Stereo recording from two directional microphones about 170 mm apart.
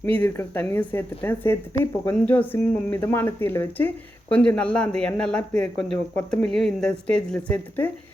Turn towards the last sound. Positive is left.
turn(degrees=10)  # may be behind; listen again after turning